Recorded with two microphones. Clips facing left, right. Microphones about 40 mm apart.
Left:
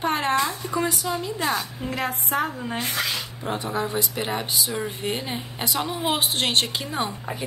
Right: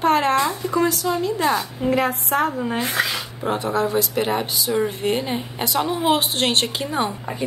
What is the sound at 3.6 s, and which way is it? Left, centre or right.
Speech, centre.